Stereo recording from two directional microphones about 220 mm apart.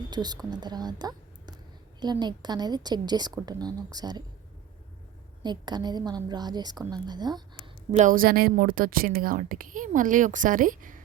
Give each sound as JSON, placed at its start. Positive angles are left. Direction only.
{"t": 0.1, "sound": "a woman's voice", "side_deg": -20}
{"t": 5.4, "sound": "a woman's voice", "side_deg": -20}
{"t": 7.6, "sound": "a woman's voice", "side_deg": -30}